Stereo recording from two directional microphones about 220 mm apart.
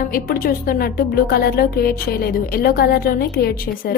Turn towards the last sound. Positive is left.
turn(degrees=45)  # may be behind; listen again after turning